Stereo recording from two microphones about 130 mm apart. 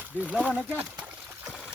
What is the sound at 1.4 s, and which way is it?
Trickle, 5° right (ahead or behind).